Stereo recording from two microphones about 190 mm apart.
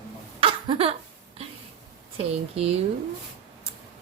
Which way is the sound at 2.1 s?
30° right (ahead or behind).